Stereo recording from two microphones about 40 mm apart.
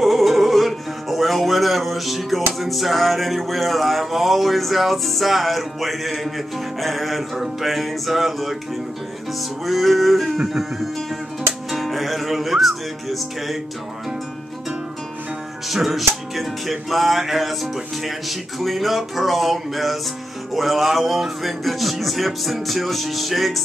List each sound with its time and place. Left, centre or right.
0.0 s music: centre
9.7 s music: centre
10.2 s music: centre
11.7 s music: centre
15.7 s music: centre
18.6 s music: centre